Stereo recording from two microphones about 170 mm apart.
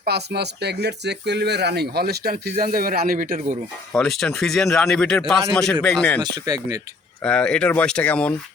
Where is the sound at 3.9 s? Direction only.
Centre (ahead or behind).